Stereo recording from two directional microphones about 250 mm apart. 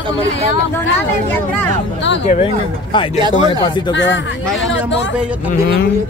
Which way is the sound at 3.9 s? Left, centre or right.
Left.